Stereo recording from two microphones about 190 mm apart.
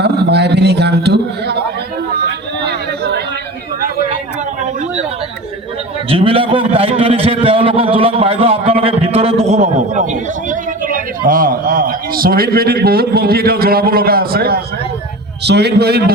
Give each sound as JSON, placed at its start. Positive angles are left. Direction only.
{"t": 0.0, "sound": "a man's voice", "side_deg": -60}
{"t": 2.6, "sound": "a sound", "side_deg": -60}
{"t": 6.1, "sound": "a man's voice", "side_deg": -30}